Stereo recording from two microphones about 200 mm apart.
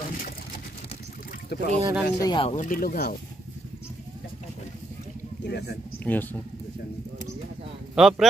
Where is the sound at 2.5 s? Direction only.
40° left (ahead or behind).